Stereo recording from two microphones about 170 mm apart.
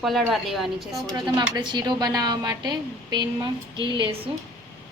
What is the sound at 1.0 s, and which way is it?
A woman's voice, 25° right (ahead or behind).